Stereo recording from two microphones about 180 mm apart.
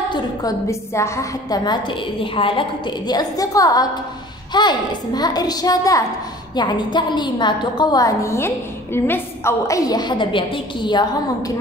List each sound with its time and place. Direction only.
0.1 s a woman's voice: 20° left (ahead or behind)